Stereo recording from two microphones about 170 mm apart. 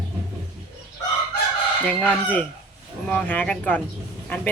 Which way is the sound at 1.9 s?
5° left (ahead or behind).